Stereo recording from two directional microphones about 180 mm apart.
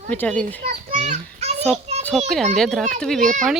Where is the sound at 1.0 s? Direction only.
40° right (ahead or behind).